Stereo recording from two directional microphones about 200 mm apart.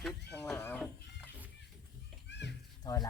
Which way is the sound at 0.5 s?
10° left (ahead or behind).